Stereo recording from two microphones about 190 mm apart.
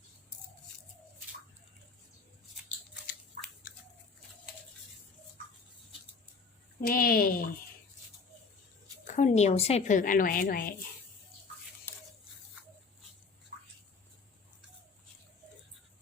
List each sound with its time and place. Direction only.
6.8 s speech: 50° left (ahead or behind)
9.0 s a woman's voice: 40° left (ahead or behind)